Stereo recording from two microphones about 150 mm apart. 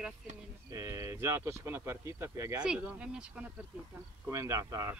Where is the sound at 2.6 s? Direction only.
5° right (ahead or behind).